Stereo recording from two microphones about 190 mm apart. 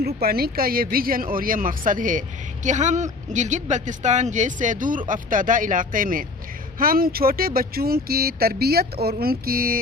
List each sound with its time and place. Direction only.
0.0 s speech: 55° right (ahead or behind)